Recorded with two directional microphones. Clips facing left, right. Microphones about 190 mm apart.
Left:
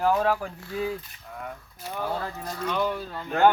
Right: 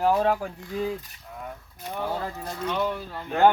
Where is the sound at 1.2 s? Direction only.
Centre (ahead or behind).